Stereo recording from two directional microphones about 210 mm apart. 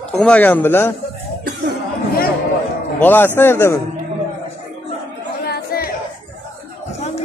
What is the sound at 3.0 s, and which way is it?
Speech, 10° left (ahead or behind).